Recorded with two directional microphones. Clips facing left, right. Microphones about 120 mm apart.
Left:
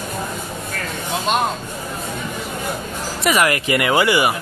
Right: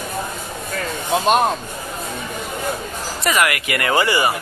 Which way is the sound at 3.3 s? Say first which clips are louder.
Left 2 dB; 10° left (ahead or behind).